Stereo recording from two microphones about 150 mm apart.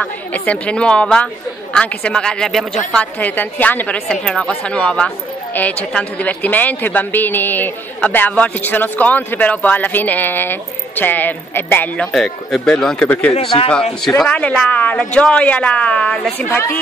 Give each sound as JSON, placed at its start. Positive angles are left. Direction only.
{"t": 0.0, "sound": "a woman's voice", "side_deg": 10}
{"t": 13.3, "sound": "speech", "side_deg": 40}
{"t": 14.0, "sound": "a man's voice", "side_deg": 5}